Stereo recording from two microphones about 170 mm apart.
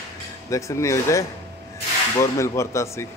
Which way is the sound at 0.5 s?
20° left (ahead or behind).